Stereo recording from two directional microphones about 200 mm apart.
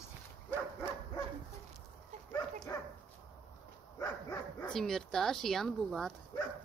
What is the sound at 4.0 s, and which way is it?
Dog, 15° left (ahead or behind).